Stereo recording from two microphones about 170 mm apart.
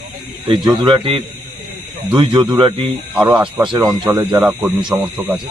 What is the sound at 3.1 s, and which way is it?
Speech, 10° right (ahead or behind).